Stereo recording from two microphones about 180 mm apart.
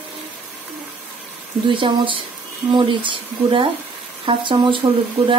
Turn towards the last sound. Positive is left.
turn(degrees=-25)  # may be behind; listen again after turning